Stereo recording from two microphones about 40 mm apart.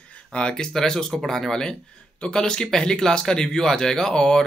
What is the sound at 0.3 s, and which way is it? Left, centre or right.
Speech, left.